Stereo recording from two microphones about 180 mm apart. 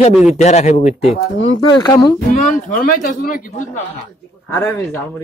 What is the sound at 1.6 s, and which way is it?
Speech, 25° left (ahead or behind).